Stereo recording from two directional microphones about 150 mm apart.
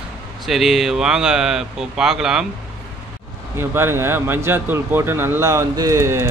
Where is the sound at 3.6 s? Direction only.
15° right (ahead or behind).